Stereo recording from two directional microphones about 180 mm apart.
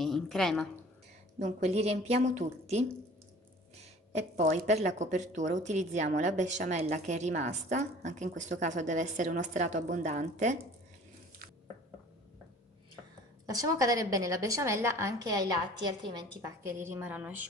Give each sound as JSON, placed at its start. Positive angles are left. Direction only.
{"t": 0.0, "sound": "a sound", "side_deg": 0}
{"t": 1.4, "sound": "a woman's voice", "side_deg": -35}
{"t": 4.1, "sound": "a woman's voice", "side_deg": -40}
{"t": 13.5, "sound": "a woman's voice", "side_deg": -20}